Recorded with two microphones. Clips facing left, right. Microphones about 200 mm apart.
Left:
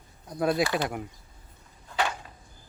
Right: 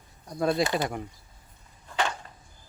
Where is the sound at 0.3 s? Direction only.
5° left (ahead or behind).